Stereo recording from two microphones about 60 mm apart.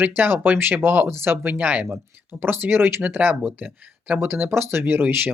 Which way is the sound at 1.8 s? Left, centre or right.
Right.